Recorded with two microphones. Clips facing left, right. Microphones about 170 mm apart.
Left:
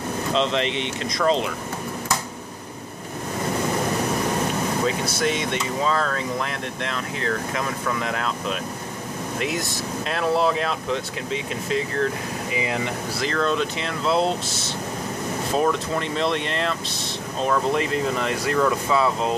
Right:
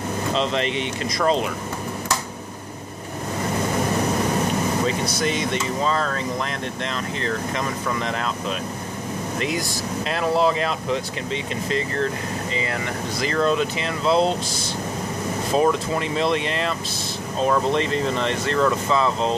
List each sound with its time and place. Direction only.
0.3 s speech: centre (ahead or behind)
5.2 s speech: centre (ahead or behind)
12.5 s speech: 15° left (ahead or behind)
13.2 s speech: 5° right (ahead or behind)
15.5 s speech: 5° right (ahead or behind)